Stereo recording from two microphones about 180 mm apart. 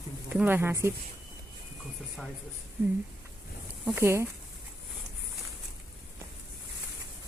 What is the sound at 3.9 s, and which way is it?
Speech, 15° right (ahead or behind).